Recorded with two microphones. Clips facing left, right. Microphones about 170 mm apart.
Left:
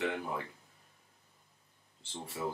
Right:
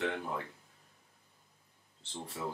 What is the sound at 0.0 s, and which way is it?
Speech, 5° left (ahead or behind).